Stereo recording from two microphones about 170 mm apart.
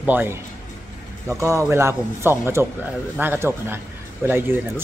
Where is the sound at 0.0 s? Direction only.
10° right (ahead or behind).